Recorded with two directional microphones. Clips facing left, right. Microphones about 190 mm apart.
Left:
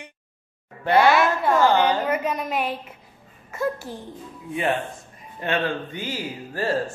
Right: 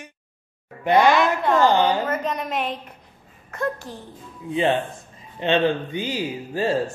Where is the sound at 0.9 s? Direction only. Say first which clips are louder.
Right 1 dB; 15° right (ahead or behind).